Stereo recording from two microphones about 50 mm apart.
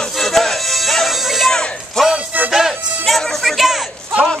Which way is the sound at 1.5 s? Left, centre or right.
Centre.